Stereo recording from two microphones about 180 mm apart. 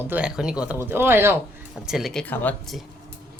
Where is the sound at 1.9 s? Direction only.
Centre (ahead or behind).